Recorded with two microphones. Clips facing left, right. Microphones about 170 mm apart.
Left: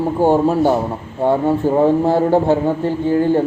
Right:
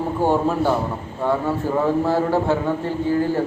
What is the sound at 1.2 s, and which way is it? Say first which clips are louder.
A man's voice: left 6 dB; 30° left (ahead or behind).